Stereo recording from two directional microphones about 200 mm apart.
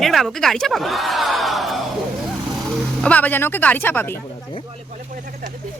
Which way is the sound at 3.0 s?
5° left (ahead or behind).